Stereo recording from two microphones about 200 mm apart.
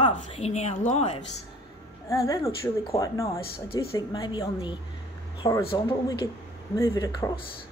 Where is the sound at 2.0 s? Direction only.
15° left (ahead or behind).